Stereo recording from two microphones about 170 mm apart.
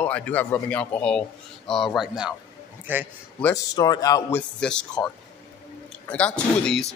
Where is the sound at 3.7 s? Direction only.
20° left (ahead or behind).